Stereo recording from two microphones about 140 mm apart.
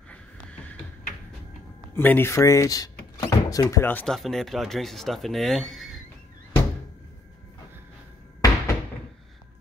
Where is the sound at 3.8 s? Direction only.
10° left (ahead or behind).